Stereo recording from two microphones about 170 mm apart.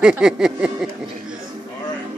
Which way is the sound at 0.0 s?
5° right (ahead or behind).